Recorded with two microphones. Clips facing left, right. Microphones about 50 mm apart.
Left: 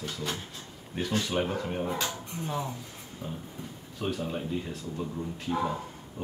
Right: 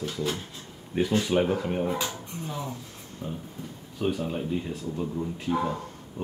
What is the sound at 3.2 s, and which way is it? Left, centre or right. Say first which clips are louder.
Speech: right 3 dB; centre.